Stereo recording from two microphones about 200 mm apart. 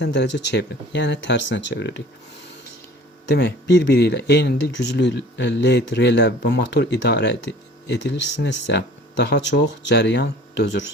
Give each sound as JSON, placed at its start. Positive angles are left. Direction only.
{"t": 0.0, "sound": "speech", "side_deg": 60}
{"t": 3.2, "sound": "speech", "side_deg": 60}